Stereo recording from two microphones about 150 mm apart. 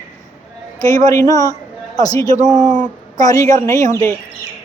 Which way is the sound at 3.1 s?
25° left (ahead or behind).